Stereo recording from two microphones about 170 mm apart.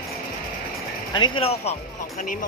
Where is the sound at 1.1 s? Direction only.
30° left (ahead or behind).